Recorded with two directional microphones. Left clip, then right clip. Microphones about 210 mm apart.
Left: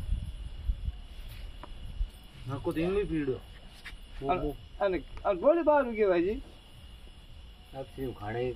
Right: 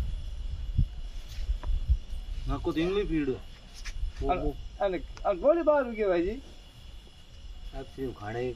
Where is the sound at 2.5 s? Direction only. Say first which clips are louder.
Right 2 dB; 40° right (ahead or behind).